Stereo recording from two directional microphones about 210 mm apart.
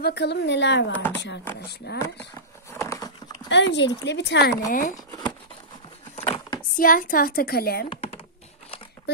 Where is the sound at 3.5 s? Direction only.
60° left (ahead or behind).